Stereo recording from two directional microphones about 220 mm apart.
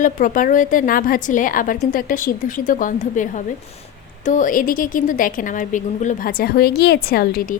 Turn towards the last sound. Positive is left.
turn(degrees=40)  # may be behind; listen again after turning